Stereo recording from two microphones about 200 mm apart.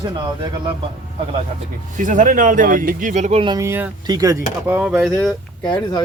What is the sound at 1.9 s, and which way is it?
Speech, 40° right (ahead or behind).